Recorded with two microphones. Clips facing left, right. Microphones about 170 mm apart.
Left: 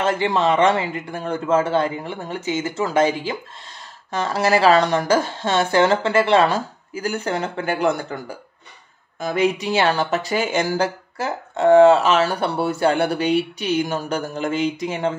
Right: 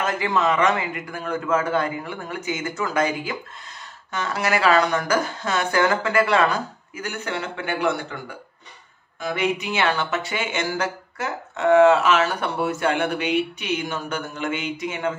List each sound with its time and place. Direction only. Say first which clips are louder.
0.0 s a man's voice: left 3 dB; 30° left (ahead or behind)